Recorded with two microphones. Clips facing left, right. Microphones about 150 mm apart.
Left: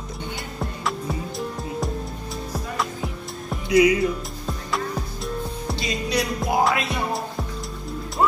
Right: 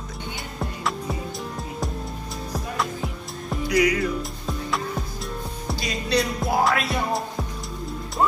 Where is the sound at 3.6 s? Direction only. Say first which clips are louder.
Left 4 dB; 25° left (ahead or behind).